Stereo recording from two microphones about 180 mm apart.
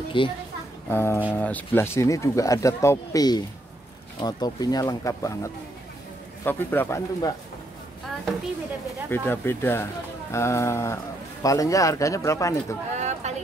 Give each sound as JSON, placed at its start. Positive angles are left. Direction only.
{"t": 0.2, "sound": "speech", "side_deg": 30}
{"t": 0.8, "sound": "speech", "side_deg": 10}
{"t": 9.1, "sound": "speech", "side_deg": 10}
{"t": 12.9, "sound": "a sound", "side_deg": -40}